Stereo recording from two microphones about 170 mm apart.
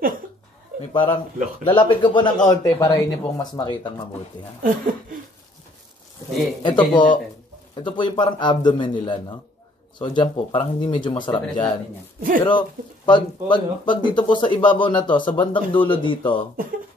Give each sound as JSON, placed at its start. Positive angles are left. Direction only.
{"t": 0.9, "sound": "a man's voice", "side_deg": 30}
{"t": 2.4, "sound": "speech", "side_deg": 20}
{"t": 6.6, "sound": "speech", "side_deg": 25}